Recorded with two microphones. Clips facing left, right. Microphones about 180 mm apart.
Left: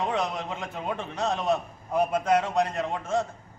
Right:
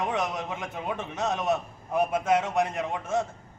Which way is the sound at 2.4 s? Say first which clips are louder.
Left 1 dB; 10° right (ahead or behind).